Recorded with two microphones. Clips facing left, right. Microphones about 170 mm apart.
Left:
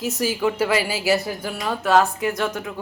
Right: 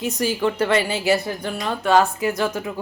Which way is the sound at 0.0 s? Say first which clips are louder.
Right 1 dB; centre (ahead or behind).